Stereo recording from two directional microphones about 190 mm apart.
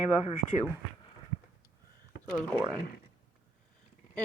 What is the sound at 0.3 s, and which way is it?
Speech, 40° left (ahead or behind).